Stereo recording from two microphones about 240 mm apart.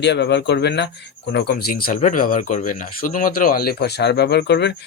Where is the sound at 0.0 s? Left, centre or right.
Left.